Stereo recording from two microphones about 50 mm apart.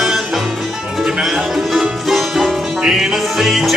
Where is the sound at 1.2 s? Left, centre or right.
Centre.